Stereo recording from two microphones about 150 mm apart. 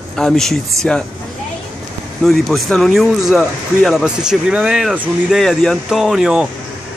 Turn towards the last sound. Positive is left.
turn(degrees=-5)  # may be behind; listen again after turning